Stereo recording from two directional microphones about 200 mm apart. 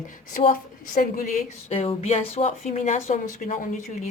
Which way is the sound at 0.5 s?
45° left (ahead or behind).